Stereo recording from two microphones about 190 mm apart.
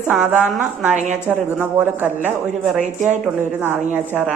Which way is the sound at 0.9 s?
40° right (ahead or behind).